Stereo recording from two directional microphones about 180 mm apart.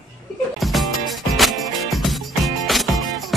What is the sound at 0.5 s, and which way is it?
Music, centre (ahead or behind).